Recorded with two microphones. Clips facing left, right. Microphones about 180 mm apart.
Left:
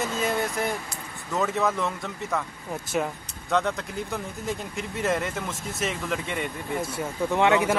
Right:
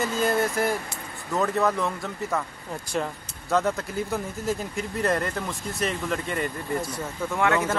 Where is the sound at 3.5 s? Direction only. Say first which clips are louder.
Right 1 dB; 5° right (ahead or behind).